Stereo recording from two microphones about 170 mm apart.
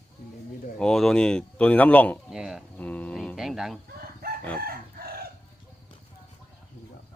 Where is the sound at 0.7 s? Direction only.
5° left (ahead or behind).